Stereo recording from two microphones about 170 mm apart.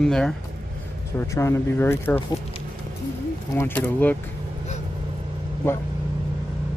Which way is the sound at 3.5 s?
15° left (ahead or behind).